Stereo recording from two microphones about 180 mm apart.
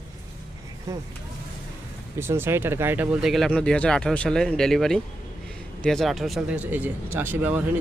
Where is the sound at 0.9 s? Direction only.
20° right (ahead or behind).